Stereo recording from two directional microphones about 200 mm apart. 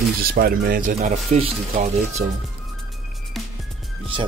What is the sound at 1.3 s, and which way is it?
Speech, 30° right (ahead or behind).